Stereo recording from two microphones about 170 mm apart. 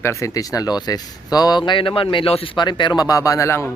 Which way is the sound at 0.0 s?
15° left (ahead or behind).